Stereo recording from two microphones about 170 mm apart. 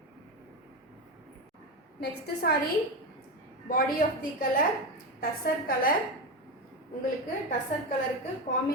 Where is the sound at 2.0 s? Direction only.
70° left (ahead or behind).